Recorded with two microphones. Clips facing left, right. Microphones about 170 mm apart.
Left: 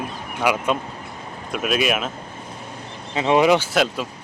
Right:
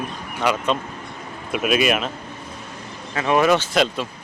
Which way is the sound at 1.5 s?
5° right (ahead or behind).